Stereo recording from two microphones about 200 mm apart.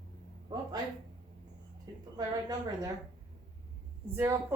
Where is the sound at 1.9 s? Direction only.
20° right (ahead or behind).